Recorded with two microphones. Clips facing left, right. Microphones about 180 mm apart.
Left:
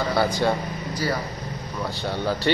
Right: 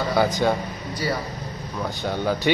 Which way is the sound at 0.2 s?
5° left (ahead or behind).